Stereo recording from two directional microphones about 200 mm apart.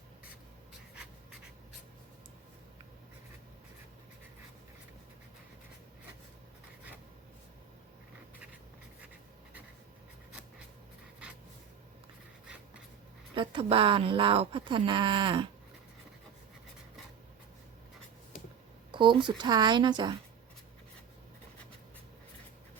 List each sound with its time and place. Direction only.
13.3 s speech: 25° right (ahead or behind)
18.9 s speech: 25° right (ahead or behind)